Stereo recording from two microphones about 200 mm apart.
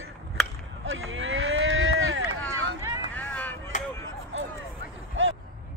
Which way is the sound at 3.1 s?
10° left (ahead or behind).